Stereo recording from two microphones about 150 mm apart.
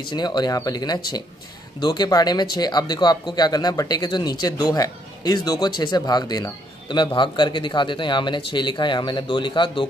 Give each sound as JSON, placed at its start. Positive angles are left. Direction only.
{"t": 0.0, "sound": "speech", "side_deg": 30}